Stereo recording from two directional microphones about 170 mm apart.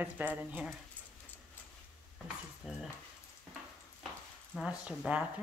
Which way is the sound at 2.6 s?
5° right (ahead or behind).